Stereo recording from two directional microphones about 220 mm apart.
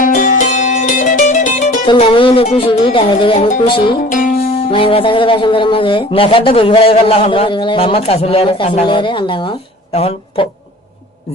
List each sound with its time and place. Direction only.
0.0 s music: 35° left (ahead or behind)
1.9 s speech: 25° left (ahead or behind)
4.1 s music: 40° left (ahead or behind)
4.7 s speech: 25° left (ahead or behind)